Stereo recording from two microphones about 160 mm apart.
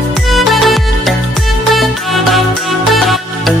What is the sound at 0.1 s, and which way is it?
Music, centre (ahead or behind).